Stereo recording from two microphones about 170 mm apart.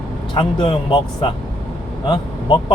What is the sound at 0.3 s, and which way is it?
Speech, 30° left (ahead or behind).